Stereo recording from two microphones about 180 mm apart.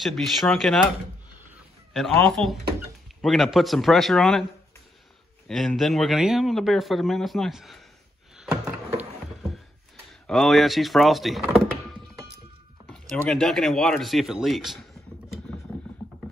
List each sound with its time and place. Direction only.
0.0 s speech: centre (ahead or behind)
2.0 s speech: centre (ahead or behind)
5.5 s speech: centre (ahead or behind)
8.4 s a sound: 5° right (ahead or behind)
10.2 s speech: centre (ahead or behind)
13.1 s speech: 5° left (ahead or behind)